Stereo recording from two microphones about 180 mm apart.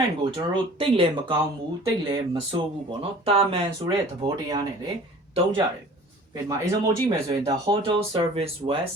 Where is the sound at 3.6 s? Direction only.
20° right (ahead or behind).